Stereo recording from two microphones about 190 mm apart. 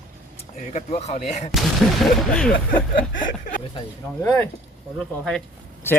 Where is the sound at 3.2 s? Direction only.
45° left (ahead or behind).